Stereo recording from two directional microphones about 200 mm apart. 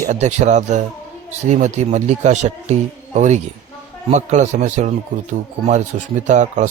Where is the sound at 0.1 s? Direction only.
35° right (ahead or behind).